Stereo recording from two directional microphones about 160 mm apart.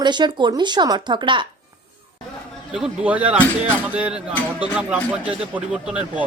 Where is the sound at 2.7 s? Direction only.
5° right (ahead or behind).